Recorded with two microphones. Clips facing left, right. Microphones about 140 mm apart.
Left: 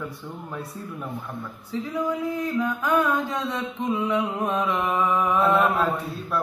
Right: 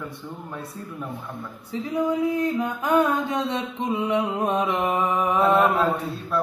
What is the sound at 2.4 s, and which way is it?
Mantra, 25° right (ahead or behind).